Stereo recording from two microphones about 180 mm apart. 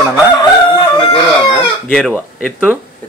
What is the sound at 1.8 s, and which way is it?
Speech, 5° left (ahead or behind).